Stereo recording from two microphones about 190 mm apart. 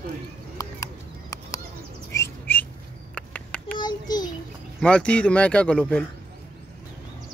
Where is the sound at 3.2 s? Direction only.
5° left (ahead or behind).